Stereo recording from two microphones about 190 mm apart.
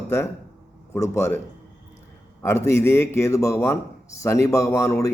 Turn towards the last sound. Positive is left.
turn(degrees=15)  # may be behind; listen again after turning